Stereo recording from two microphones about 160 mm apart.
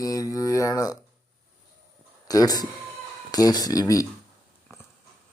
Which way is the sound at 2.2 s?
25° left (ahead or behind).